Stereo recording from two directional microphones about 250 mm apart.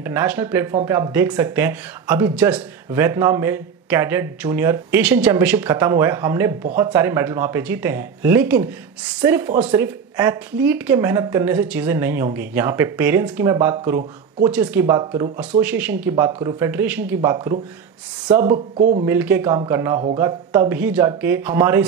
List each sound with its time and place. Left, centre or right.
0.0 s speech: centre
18.8 s speech: right
19.0 s speech: centre